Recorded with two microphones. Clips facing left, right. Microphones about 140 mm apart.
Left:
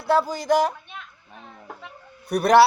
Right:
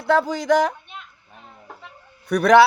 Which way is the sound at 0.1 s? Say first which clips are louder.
Right 2 dB; 55° right (ahead or behind).